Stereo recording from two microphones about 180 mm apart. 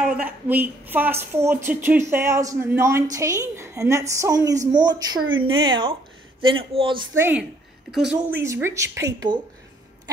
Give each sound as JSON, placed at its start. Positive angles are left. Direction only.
{"t": 0.0, "sound": "a woman's voice", "side_deg": -5}
{"t": 7.2, "sound": "a woman's voice", "side_deg": -10}